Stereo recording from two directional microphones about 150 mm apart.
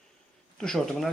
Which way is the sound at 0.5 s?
5° left (ahead or behind).